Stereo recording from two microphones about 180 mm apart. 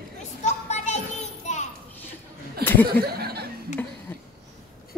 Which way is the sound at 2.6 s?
10° left (ahead or behind).